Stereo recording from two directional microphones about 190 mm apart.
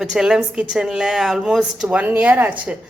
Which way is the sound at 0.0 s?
5° right (ahead or behind).